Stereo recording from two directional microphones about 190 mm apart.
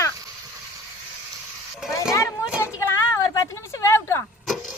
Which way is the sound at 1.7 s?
Centre (ahead or behind).